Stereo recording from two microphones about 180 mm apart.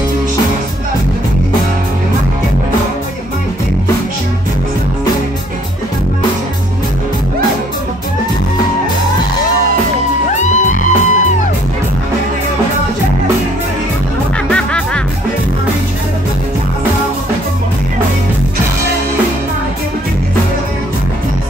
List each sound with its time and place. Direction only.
10.3 s music: 40° left (ahead or behind)
14.5 s music: 5° left (ahead or behind)